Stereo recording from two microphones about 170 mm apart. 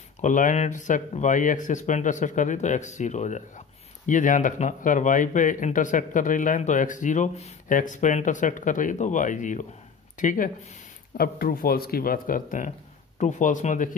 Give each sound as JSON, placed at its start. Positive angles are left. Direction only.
{"t": 0.2, "sound": "speech", "side_deg": 50}